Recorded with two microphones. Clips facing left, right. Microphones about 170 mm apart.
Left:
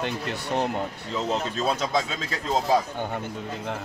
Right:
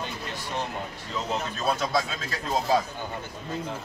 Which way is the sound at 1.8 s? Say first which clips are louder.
Left 1 dB; 20° left (ahead or behind).